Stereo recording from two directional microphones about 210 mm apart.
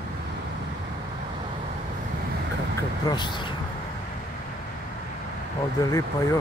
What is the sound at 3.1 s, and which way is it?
Speech, 20° left (ahead or behind).